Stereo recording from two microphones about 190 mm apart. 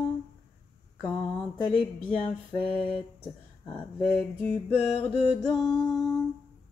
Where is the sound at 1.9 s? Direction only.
5° left (ahead or behind).